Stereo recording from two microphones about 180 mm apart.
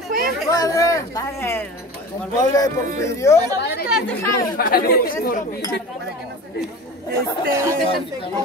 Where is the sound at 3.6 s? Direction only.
65° left (ahead or behind).